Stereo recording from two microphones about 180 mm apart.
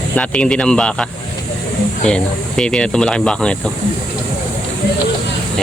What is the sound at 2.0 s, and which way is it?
Speech, 5° left (ahead or behind).